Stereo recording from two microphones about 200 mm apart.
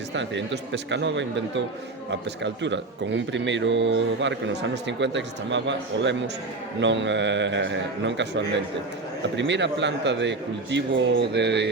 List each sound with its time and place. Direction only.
0.1 s a man's voice: 60° right (ahead or behind)